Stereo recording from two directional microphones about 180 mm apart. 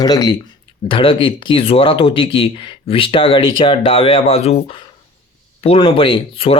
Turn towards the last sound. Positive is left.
turn(degrees=30)  # may be behind; listen again after turning